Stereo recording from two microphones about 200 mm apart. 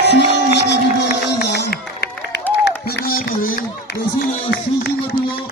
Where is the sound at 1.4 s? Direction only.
55° left (ahead or behind).